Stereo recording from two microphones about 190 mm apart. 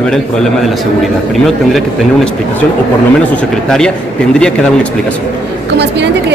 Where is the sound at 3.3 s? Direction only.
5° left (ahead or behind).